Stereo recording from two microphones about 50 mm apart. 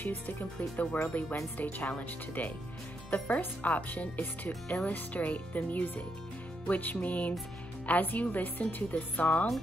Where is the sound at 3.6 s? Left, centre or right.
Left.